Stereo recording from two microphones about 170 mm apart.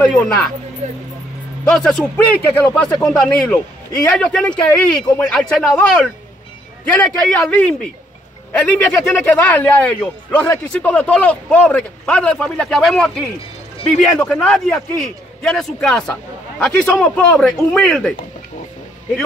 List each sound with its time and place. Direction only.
0.0 s speech: 5° left (ahead or behind)
0.8 s speech: 40° right (ahead or behind)
1.7 s a man's voice: 5° left (ahead or behind)
6.9 s a man's voice: 5° left (ahead or behind)
14.2 s a man's voice: 5° left (ahead or behind)